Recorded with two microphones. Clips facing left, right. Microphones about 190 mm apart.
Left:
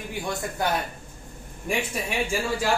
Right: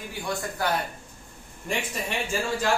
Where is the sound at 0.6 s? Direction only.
20° left (ahead or behind).